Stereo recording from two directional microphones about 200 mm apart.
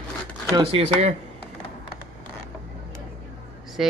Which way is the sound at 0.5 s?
25° right (ahead or behind).